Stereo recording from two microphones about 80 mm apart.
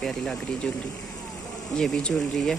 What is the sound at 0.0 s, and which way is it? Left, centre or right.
Speech, centre.